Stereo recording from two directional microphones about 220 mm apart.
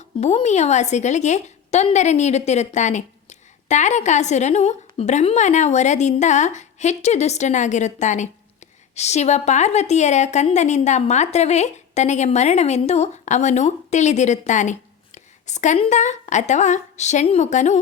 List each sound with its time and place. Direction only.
0.2 s a woman's voice: 30° left (ahead or behind)